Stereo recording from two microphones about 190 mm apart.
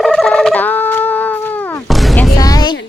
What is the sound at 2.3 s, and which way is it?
Music, 20° left (ahead or behind).